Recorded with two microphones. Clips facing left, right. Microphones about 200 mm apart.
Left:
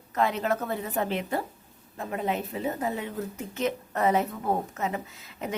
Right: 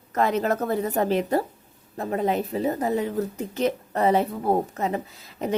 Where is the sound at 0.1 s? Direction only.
45° right (ahead or behind).